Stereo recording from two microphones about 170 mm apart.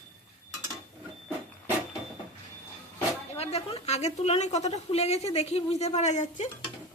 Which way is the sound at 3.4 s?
35° left (ahead or behind).